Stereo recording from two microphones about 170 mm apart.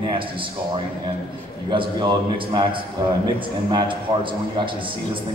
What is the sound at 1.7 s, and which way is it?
A man's voice, 30° right (ahead or behind).